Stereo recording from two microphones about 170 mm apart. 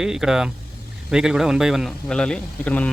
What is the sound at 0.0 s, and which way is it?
A man's voice, 5° right (ahead or behind).